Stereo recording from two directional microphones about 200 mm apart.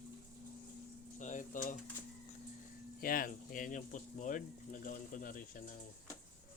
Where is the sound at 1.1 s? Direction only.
40° left (ahead or behind).